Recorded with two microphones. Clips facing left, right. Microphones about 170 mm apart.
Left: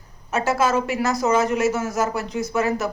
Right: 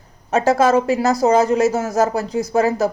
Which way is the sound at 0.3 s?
35° right (ahead or behind).